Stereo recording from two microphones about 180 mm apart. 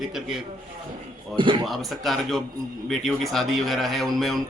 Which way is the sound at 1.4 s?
25° right (ahead or behind).